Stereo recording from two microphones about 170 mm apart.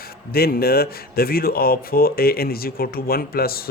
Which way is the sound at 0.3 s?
65° left (ahead or behind).